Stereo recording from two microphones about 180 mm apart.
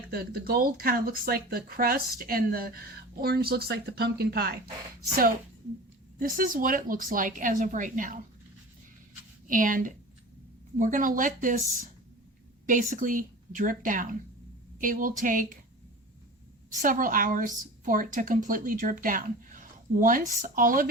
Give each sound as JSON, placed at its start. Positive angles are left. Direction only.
{"t": 0.1, "sound": "speech", "side_deg": -55}
{"t": 6.1, "sound": "a woman's voice", "side_deg": -50}
{"t": 9.5, "sound": "a woman's voice", "side_deg": -50}
{"t": 16.6, "sound": "a woman's voice", "side_deg": -50}